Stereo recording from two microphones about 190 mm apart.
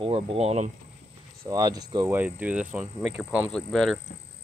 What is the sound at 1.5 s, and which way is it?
Speech, 20° right (ahead or behind).